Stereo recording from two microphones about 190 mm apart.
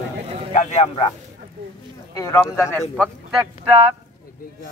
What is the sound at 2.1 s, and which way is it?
Speech, 15° left (ahead or behind).